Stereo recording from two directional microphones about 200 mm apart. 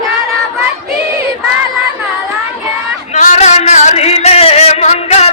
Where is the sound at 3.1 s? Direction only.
35° left (ahead or behind).